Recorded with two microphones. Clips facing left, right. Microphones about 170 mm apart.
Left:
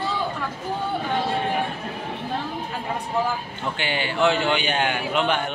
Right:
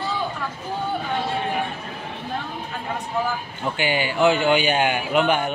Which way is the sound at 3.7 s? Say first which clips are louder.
Right 3 dB; 10° right (ahead or behind).